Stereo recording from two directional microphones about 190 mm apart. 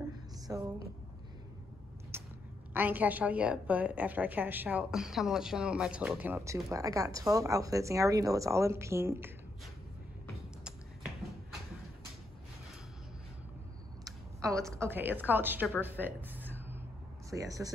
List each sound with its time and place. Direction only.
0.5 s a woman's voice: 15° right (ahead or behind)
2.1 s a sound: 10° right (ahead or behind)
2.7 s a woman's voice: 10° right (ahead or behind)
14.0 s a woman's voice: 15° right (ahead or behind)
15.8 s a sound: 10° right (ahead or behind)
17.3 s a woman's voice: 20° right (ahead or behind)